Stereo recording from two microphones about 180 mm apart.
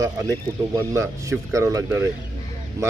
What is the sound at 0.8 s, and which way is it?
Speech, 15° right (ahead or behind).